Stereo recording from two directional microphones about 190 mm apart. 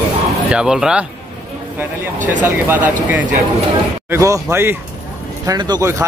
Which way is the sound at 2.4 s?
10° right (ahead or behind).